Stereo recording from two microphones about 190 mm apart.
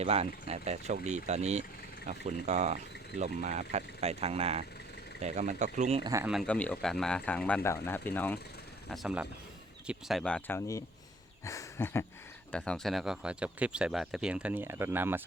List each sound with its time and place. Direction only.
0.0 s speech: 30° right (ahead or behind)
6.0 s speech: 20° right (ahead or behind)
6.2 s speech: centre (ahead or behind)
8.9 s speech: centre (ahead or behind); by 10.8 s 15° left (ahead or behind)
11.4 s a sound: 15° left (ahead or behind)
12.5 s speech: 5° left (ahead or behind); by 15.2 s 10° right (ahead or behind)